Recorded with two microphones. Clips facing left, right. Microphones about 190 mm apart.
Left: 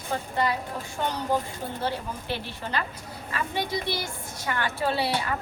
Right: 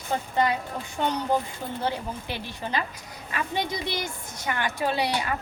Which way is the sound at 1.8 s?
15° right (ahead or behind).